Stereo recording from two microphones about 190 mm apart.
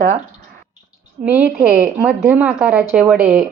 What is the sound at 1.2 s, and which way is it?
A woman's voice, 10° right (ahead or behind).